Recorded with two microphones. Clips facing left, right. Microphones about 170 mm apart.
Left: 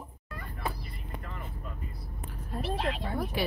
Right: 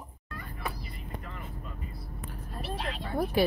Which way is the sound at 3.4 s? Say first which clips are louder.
Right 7 dB; 40° right (ahead or behind).